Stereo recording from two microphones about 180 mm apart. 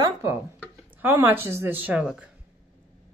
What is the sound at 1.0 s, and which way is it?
A woman's voice, 10° right (ahead or behind).